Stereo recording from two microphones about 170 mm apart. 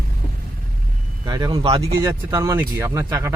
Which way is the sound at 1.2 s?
25° right (ahead or behind).